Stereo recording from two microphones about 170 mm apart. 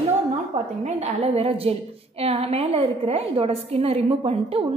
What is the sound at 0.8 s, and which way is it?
A woman's voice, 40° right (ahead or behind).